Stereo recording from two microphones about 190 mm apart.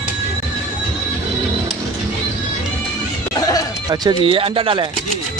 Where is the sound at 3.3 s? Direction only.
20° left (ahead or behind).